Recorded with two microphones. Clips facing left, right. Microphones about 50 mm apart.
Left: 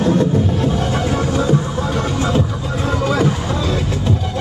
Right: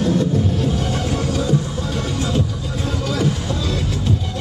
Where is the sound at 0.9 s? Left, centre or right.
Left.